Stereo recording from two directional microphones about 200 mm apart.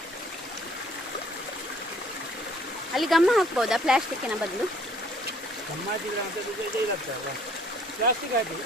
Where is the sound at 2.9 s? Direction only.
Centre (ahead or behind).